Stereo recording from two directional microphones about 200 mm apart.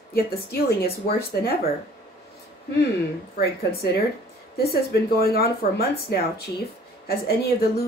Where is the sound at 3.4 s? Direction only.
50° left (ahead or behind).